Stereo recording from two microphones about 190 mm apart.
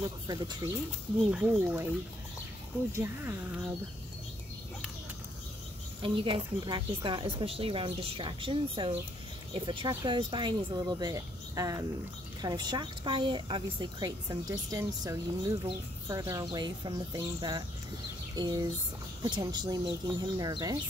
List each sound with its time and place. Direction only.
0.3 s a woman's voice: 20° right (ahead or behind)
1.3 s speech: 10° right (ahead or behind)
2.9 s speech: 15° right (ahead or behind)
6.0 s a woman's voice: 25° right (ahead or behind)
18.3 s a sound: 20° right (ahead or behind)
19.2 s a woman's voice: 20° right (ahead or behind)